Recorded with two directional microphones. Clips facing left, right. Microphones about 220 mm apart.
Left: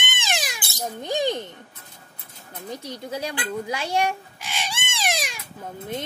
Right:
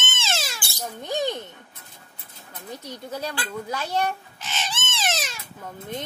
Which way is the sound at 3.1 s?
15° left (ahead or behind).